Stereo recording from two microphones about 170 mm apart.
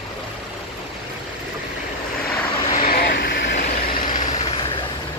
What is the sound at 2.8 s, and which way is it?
Vehicle, 65° left (ahead or behind).